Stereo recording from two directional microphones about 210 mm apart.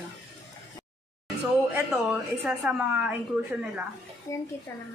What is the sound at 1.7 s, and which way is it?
A woman's voice, 5° right (ahead or behind).